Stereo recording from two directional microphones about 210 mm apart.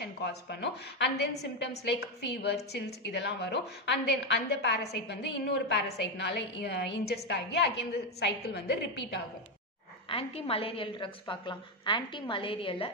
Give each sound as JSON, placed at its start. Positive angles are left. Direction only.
{"t": 0.0, "sound": "a woman's voice", "side_deg": 50}
{"t": 10.0, "sound": "a woman's voice", "side_deg": 25}